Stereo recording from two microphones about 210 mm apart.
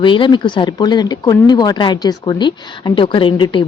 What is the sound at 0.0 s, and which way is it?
Speech, 25° left (ahead or behind).